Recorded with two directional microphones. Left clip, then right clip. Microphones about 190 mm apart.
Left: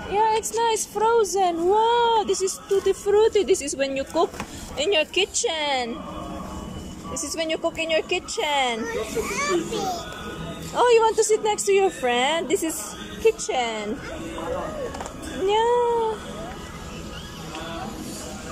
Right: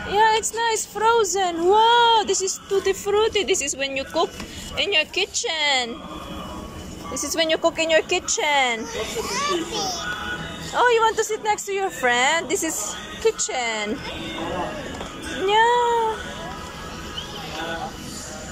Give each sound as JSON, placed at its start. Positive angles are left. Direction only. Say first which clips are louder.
{"t": 0.1, "sound": "speech", "louder": "right 3 dB", "side_deg": 10}
{"t": 7.2, "sound": "speech", "louder": "right 5 dB", "side_deg": 5}
{"t": 9.7, "sound": "a child's voice", "louder": "right 1 dB", "side_deg": 20}
{"t": 15.4, "sound": "cat", "louder": "right 2 dB", "side_deg": 15}